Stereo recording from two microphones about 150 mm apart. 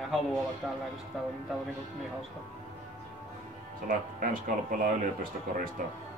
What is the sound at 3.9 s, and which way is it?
Speech, 60° right (ahead or behind).